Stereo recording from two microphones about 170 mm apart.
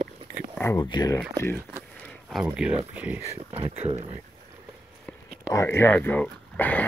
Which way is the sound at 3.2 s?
35° right (ahead or behind).